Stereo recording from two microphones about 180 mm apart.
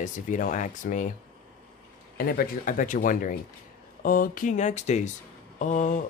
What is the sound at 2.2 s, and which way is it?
Speech, 55° left (ahead or behind).